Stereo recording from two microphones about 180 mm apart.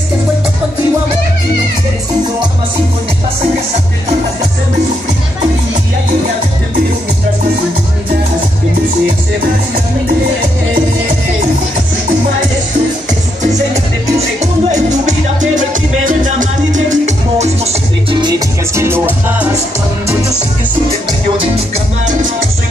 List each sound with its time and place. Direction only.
14.4 s music: 40° right (ahead or behind)
18.2 s music: 15° right (ahead or behind)